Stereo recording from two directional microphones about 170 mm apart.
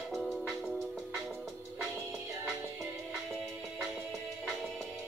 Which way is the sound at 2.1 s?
15° right (ahead or behind).